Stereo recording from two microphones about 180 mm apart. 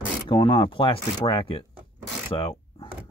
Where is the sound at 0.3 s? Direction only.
30° left (ahead or behind).